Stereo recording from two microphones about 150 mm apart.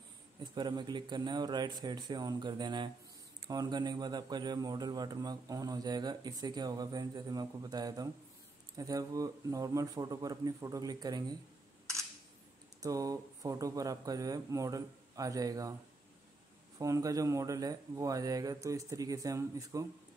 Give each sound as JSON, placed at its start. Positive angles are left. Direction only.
{"t": 0.4, "sound": "a man's voice", "side_deg": -30}
{"t": 12.8, "sound": "a man's voice", "side_deg": -25}
{"t": 16.7, "sound": "a man's voice", "side_deg": -20}